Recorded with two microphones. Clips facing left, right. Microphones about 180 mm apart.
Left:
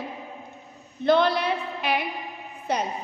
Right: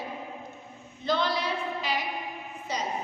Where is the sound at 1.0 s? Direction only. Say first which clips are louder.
Left 7 dB; 60° left (ahead or behind).